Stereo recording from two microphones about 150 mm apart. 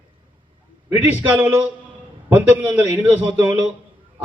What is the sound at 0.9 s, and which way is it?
A man's voice, 15° right (ahead or behind).